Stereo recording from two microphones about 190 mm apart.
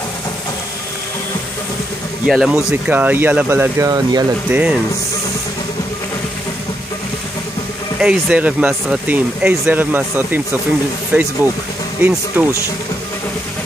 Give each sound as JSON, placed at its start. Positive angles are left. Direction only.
{"t": 2.2, "sound": "speech", "side_deg": 0}
{"t": 8.0, "sound": "speech", "side_deg": -5}